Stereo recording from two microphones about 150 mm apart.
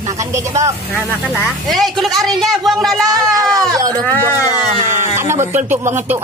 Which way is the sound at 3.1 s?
25° right (ahead or behind).